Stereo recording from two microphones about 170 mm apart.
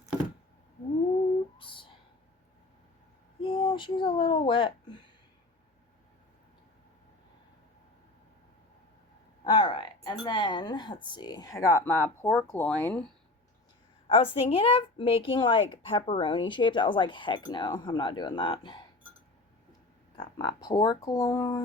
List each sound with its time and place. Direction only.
1.5 s a sound: 30° left (ahead or behind)
3.4 s speech: 30° left (ahead or behind)
9.4 s a sound: 25° left (ahead or behind)
10.2 s a woman's voice: 30° left (ahead or behind); by 13.1 s 5° left (ahead or behind)
14.1 s a woman's voice: 35° left (ahead or behind)
20.1 s a woman's voice: 25° left (ahead or behind)